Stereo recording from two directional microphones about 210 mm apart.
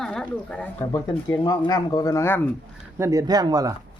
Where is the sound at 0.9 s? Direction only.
20° left (ahead or behind).